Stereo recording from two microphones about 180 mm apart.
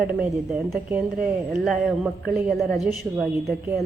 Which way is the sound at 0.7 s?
5° right (ahead or behind).